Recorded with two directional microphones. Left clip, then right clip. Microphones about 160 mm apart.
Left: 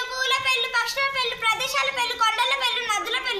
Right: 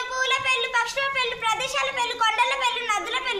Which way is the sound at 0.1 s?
15° right (ahead or behind).